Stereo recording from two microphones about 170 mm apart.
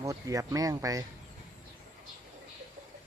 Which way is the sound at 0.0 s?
20° right (ahead or behind).